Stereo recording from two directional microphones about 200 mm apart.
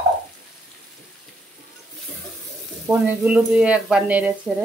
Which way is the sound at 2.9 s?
5° right (ahead or behind).